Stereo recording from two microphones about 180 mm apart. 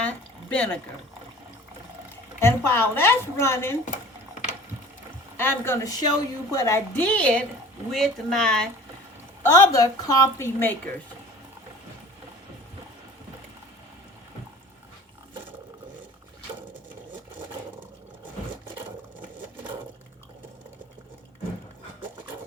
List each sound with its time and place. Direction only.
0.0 s pour: 10° left (ahead or behind)
2.4 s speech: 15° left (ahead or behind)
5.4 s speech: 15° left (ahead or behind)
9.4 s speech: 15° left (ahead or behind)